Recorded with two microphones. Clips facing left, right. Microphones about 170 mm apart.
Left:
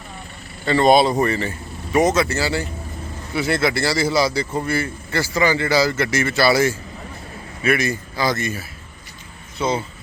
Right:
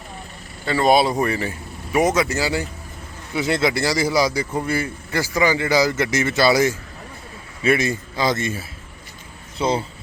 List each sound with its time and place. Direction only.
0.6 s a man's voice: 5° right (ahead or behind); by 9.8 s 30° right (ahead or behind)